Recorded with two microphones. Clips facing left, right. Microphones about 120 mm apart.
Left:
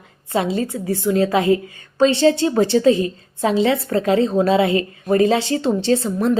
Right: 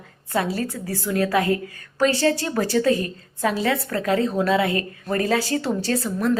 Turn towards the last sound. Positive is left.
turn(degrees=25)  # may be behind; listen again after turning